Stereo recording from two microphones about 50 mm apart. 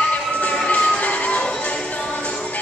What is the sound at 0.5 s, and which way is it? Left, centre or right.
Music, left.